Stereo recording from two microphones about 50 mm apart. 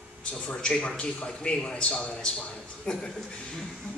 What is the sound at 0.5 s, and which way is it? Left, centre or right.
A man's voice, centre.